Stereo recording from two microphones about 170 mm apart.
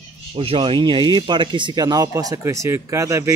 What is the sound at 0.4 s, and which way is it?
Speech, 30° right (ahead or behind).